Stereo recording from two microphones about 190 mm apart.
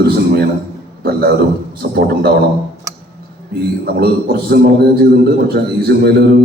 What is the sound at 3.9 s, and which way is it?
A man's voice, 55° right (ahead or behind).